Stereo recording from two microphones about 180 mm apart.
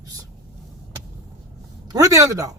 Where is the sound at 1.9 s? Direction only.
20° right (ahead or behind).